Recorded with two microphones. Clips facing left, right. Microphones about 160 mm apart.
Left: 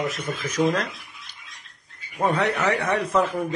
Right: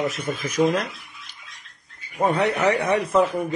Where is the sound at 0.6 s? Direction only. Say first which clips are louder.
Right 2 dB; 5° right (ahead or behind).